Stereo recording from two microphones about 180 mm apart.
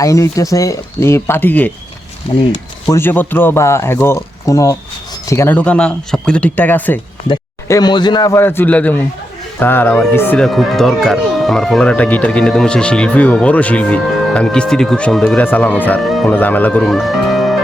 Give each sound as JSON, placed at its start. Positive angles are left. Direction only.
{"t": 0.0, "sound": "speech", "side_deg": 20}
{"t": 2.9, "sound": "speech", "side_deg": 10}
{"t": 7.3, "sound": "speech", "side_deg": 20}